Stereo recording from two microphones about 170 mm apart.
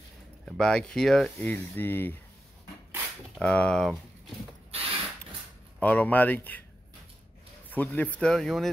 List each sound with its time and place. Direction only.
0.5 s speech: 5° left (ahead or behind)
3.3 s speech: 5° left (ahead or behind)
4.7 s mechanisms: 35° right (ahead or behind)
5.8 s speech: 10° left (ahead or behind)
7.7 s speech: 10° left (ahead or behind)